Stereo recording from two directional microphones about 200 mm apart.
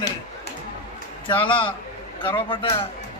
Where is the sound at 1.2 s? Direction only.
25° left (ahead or behind).